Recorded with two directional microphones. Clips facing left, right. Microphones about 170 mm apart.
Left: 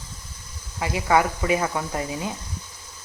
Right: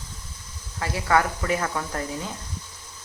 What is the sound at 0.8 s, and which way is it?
Speech, 15° left (ahead or behind).